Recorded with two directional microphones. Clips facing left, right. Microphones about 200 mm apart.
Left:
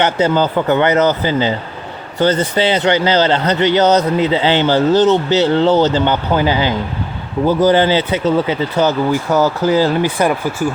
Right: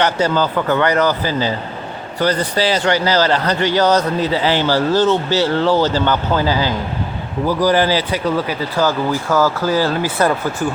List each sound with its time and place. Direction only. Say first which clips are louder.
0.0 s speech: left 2 dB; 20° left (ahead or behind)